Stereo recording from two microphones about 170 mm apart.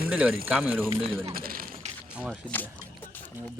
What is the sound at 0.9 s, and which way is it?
Speech, 35° right (ahead or behind).